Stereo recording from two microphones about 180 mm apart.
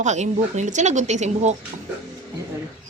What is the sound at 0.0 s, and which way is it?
Speech, 40° right (ahead or behind).